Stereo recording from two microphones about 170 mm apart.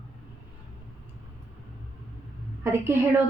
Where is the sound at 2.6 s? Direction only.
15° right (ahead or behind).